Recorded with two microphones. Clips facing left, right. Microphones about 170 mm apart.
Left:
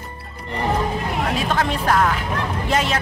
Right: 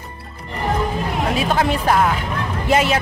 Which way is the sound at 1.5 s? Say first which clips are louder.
Right 2 dB; 10° right (ahead or behind).